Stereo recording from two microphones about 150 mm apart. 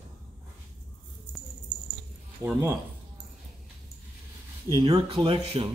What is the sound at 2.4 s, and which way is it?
Speech, 15° right (ahead or behind).